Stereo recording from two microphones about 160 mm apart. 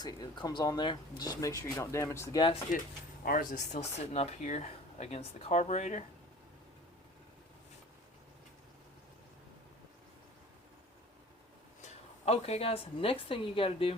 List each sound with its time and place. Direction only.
0.0 s speech: 25° left (ahead or behind)
3.2 s speech: 55° left (ahead or behind)
11.8 s speech: 40° left (ahead or behind)